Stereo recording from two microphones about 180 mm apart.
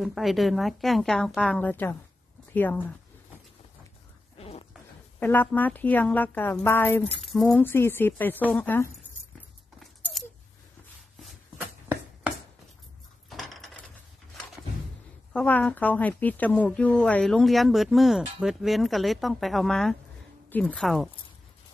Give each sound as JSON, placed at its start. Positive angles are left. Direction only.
{"t": 0.0, "sound": "a woman's voice", "side_deg": 0}
{"t": 4.4, "sound": "a sound", "side_deg": 35}
{"t": 5.2, "sound": "speech", "side_deg": 10}
{"t": 7.2, "sound": "speech", "side_deg": 0}
{"t": 7.6, "sound": "speech", "side_deg": 10}
{"t": 9.8, "sound": "keys jangling", "side_deg": 0}
{"t": 11.1, "sound": "chopping", "side_deg": -5}
{"t": 13.3, "sound": "a sound", "side_deg": 0}
{"t": 15.3, "sound": "a woman's voice", "side_deg": 10}